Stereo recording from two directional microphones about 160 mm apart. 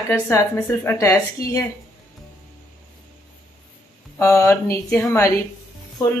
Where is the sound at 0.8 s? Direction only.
15° left (ahead or behind).